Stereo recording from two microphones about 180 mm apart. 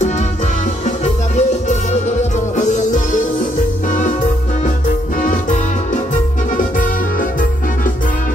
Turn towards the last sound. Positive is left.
turn(degrees=45)  # may be behind; listen again after turning